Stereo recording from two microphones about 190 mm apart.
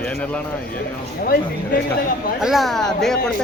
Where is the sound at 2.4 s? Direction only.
Centre (ahead or behind).